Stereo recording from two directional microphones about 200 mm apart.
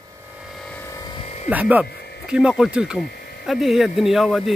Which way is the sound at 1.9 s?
55° left (ahead or behind).